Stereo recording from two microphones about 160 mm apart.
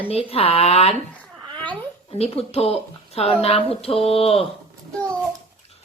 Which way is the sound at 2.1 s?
40° left (ahead or behind).